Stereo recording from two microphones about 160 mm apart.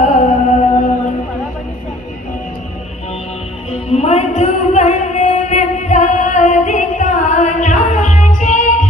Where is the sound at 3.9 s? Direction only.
45° left (ahead or behind).